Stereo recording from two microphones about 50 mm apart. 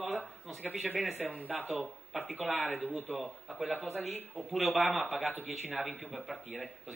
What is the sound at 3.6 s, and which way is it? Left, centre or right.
A man's voice, centre.